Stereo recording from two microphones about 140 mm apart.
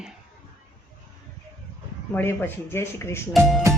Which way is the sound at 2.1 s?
15° left (ahead or behind).